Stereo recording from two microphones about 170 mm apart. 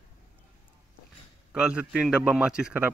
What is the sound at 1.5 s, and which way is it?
A man's voice, 5° right (ahead or behind).